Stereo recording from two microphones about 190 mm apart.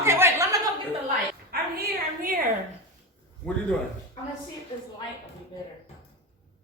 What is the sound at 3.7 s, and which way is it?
Speech, 5° left (ahead or behind).